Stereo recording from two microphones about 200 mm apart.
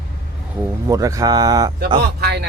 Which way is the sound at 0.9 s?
15° right (ahead or behind).